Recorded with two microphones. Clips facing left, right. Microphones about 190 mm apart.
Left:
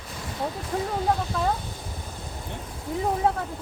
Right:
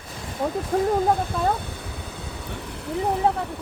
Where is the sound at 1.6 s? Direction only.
65° right (ahead or behind).